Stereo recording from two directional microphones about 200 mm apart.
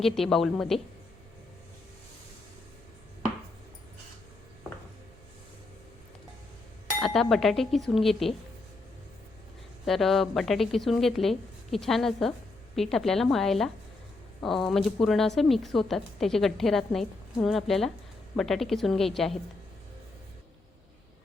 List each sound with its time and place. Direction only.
0.0 s a woman's voice: centre (ahead or behind)
7.0 s a woman's voice: centre (ahead or behind)
9.8 s a woman's voice: centre (ahead or behind)